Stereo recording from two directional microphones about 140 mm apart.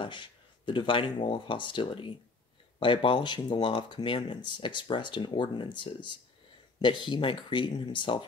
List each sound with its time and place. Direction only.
0.0 s speech: 35° left (ahead or behind)